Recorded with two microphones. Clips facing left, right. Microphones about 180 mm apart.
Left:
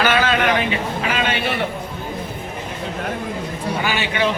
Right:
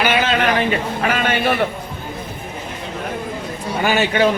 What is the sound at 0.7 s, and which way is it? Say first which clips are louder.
Speech: right 3 dB; 50° right (ahead or behind).